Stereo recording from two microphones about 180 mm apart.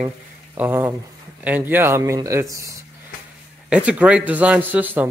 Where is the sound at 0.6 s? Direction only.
10° right (ahead or behind).